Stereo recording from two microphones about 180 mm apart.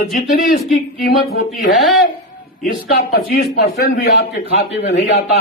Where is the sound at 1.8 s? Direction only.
Centre (ahead or behind).